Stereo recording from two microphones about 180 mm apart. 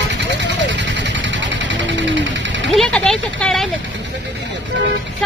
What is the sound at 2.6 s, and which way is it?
Vehicle, centre (ahead or behind).